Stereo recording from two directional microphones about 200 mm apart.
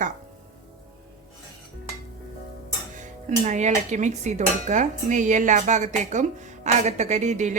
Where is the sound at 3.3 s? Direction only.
35° right (ahead or behind).